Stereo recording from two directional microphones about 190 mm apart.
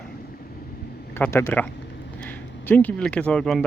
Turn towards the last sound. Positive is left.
turn(degrees=5)  # may be behind; listen again after turning